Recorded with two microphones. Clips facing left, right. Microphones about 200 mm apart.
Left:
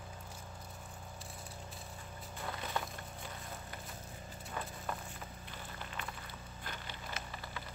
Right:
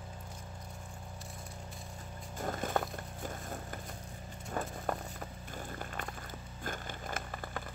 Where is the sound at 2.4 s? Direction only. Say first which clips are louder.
Right 7 dB; 45° right (ahead or behind).